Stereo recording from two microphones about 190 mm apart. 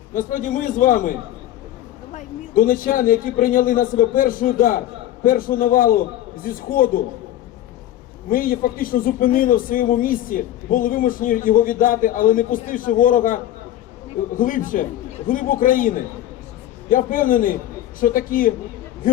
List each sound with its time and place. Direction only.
0.1 s a man's voice: 45° left (ahead or behind)
2.1 s a man's voice: 45° left (ahead or behind)
8.3 s a man's voice: 50° left (ahead or behind)